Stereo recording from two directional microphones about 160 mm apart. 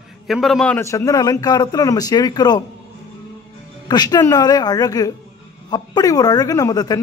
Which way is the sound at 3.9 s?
25° left (ahead or behind).